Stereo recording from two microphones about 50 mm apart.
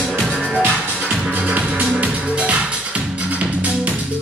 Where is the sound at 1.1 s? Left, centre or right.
Right.